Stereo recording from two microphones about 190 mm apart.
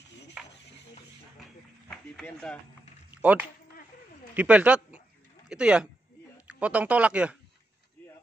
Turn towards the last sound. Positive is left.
turn(degrees=-5)  # may be behind; listen again after turning